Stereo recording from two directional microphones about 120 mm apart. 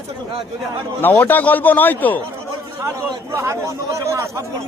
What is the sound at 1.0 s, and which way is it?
A man's voice, 15° left (ahead or behind).